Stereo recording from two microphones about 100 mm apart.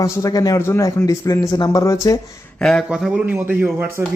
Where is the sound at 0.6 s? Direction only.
25° left (ahead or behind).